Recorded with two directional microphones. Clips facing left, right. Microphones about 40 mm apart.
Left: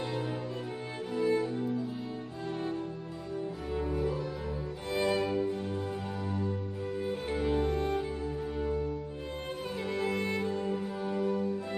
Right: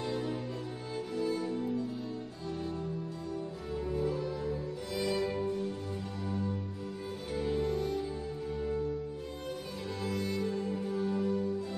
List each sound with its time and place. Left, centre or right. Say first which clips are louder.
0.0 s music: even; left
1.2 s music: left 6 dB; left
4.9 s music: left 3 dB; left
7.1 s music: left 3 dB; left
9.8 s music: left 3 dB; left